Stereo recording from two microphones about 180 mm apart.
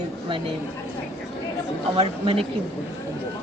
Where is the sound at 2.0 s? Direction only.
30° right (ahead or behind).